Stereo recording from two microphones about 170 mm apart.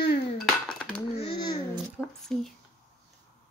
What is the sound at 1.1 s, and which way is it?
Babbling, 30° left (ahead or behind).